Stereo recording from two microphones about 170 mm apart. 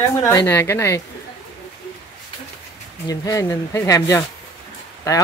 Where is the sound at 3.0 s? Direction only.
20° left (ahead or behind).